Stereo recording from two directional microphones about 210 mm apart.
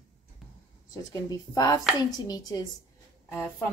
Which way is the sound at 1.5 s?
15° left (ahead or behind).